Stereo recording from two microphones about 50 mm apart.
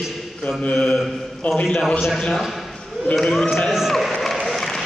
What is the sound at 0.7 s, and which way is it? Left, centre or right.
Mantra, left.